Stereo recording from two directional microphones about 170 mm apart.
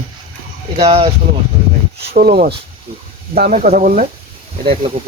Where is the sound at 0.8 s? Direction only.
35° right (ahead or behind).